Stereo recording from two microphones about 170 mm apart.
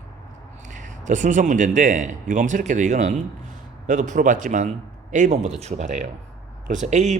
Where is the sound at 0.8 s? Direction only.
45° right (ahead or behind).